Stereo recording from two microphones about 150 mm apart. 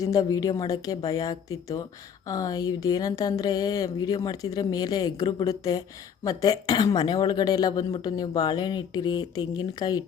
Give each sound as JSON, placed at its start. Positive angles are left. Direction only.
{"t": 0.0, "sound": "a woman's voice", "side_deg": 25}